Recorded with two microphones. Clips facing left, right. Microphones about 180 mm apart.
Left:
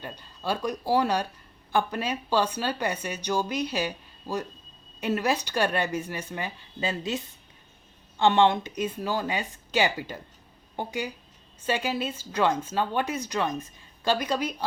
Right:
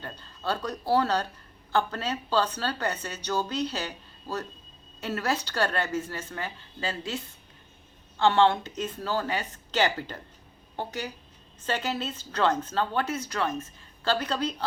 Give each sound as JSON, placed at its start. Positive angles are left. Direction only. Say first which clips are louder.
{"t": 0.0, "sound": "speech", "louder": "even", "side_deg": 10}
{"t": 8.2, "sound": "speech", "louder": "left 1 dB", "side_deg": 15}